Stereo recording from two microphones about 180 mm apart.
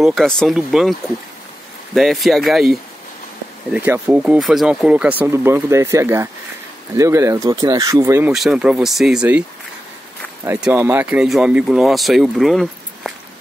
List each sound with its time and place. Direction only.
0.0 s speech: centre (ahead or behind)
2.0 s speech: centre (ahead or behind)
8.3 s speech: 5° right (ahead or behind)
10.6 s speech: 10° right (ahead or behind)